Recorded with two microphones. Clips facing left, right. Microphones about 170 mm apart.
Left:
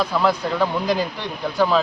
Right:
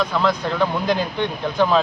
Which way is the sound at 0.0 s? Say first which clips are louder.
Even; 10° left (ahead or behind).